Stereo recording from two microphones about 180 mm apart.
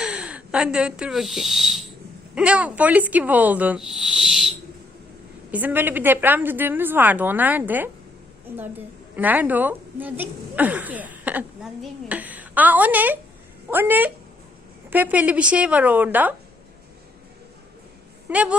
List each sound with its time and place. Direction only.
0.0 s a woman's voice: 5° right (ahead or behind)
18.3 s a woman's voice: 5° right (ahead or behind)